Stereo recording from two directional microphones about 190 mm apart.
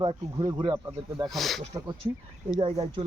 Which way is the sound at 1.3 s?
Centre (ahead or behind).